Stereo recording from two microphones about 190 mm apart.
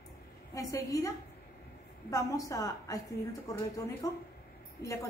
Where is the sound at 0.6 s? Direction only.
20° left (ahead or behind).